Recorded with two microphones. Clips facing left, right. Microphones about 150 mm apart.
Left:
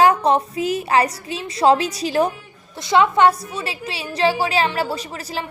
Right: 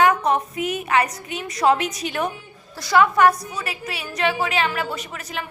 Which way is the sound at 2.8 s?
25° left (ahead or behind).